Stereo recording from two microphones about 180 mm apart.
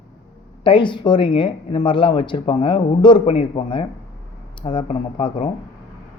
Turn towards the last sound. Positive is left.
turn(degrees=30)  # may be behind; listen again after turning